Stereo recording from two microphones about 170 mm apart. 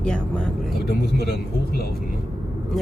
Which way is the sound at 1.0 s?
65° left (ahead or behind).